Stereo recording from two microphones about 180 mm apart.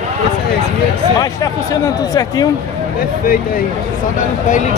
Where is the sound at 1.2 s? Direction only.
20° left (ahead or behind).